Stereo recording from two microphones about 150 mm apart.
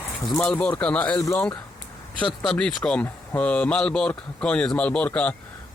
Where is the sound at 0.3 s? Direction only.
10° left (ahead or behind).